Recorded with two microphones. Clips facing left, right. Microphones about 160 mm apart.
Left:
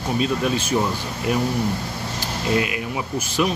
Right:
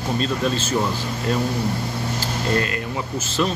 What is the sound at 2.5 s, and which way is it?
Speech, 10° left (ahead or behind).